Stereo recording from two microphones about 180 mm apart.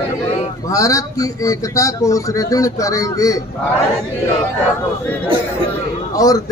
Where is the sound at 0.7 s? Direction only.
20° left (ahead or behind).